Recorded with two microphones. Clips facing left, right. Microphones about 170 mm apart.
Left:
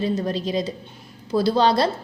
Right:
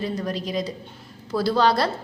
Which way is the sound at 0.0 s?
25° left (ahead or behind).